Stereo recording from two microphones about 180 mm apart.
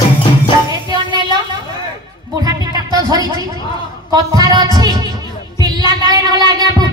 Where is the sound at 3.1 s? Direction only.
20° right (ahead or behind).